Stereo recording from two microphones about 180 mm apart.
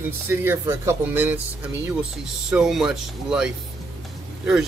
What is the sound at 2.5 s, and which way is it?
Speech, 5° right (ahead or behind).